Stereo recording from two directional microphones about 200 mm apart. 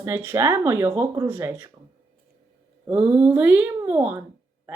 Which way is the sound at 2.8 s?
5° right (ahead or behind).